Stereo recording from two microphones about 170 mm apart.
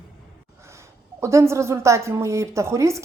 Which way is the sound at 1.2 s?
15° right (ahead or behind).